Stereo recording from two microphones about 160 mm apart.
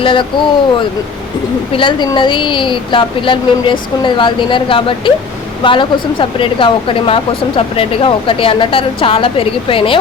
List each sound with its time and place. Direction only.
0.0 s speech: 30° left (ahead or behind)